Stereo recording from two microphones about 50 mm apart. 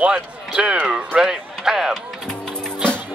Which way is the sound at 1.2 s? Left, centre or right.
Centre.